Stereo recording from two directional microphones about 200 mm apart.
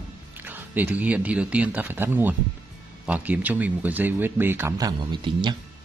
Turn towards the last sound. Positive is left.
turn(degrees=-20)  # may be behind; listen again after turning